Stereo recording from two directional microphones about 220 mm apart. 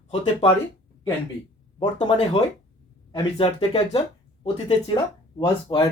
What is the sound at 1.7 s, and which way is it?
Speech, 25° left (ahead or behind).